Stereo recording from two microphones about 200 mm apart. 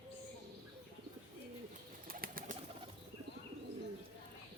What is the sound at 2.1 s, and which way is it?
Bird, 45° right (ahead or behind).